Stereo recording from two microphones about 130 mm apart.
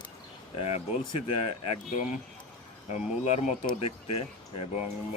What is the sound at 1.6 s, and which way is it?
Speech, 65° left (ahead or behind).